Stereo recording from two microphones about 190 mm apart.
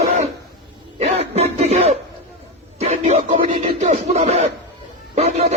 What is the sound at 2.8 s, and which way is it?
Music, 35° right (ahead or behind).